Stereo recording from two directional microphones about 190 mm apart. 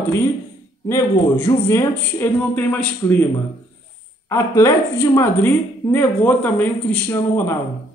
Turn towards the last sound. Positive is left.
turn(degrees=10)  # may be behind; listen again after turning